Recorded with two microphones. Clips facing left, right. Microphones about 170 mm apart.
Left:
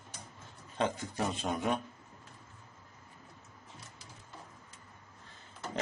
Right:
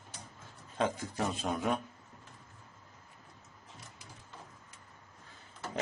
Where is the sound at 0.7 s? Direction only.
5° right (ahead or behind).